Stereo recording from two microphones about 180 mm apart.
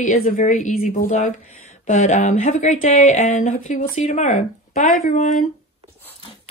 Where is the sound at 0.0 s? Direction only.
50° left (ahead or behind).